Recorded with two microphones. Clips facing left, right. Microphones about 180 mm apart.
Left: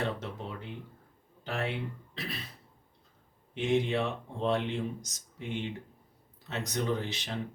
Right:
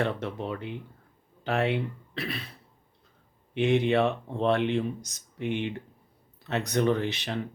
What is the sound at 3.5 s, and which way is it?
Speech, 65° right (ahead or behind).